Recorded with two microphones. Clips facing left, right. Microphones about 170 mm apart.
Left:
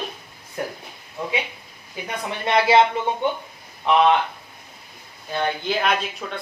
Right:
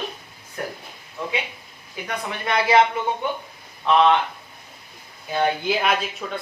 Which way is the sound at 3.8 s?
15° left (ahead or behind).